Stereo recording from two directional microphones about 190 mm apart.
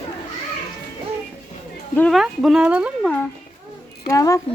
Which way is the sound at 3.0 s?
10° left (ahead or behind).